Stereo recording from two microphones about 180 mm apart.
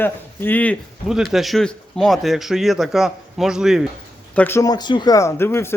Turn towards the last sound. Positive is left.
turn(degrees=15)  # may be behind; listen again after turning